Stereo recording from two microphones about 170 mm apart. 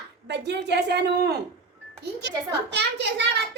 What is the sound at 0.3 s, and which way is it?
A child's voice, 90° right.